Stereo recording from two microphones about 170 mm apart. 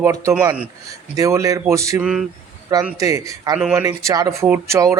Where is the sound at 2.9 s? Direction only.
20° right (ahead or behind).